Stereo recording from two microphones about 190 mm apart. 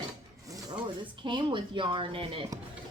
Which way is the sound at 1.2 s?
25° right (ahead or behind).